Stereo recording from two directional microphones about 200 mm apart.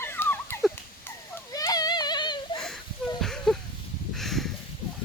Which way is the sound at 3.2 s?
Centre (ahead or behind).